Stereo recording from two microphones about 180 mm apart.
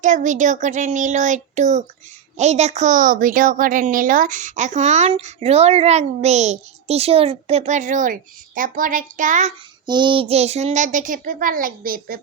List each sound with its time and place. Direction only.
0.0 s a woman's voice: 45° right (ahead or behind)
9.8 s speech: 25° right (ahead or behind); by 12.2 s 55° right (ahead or behind)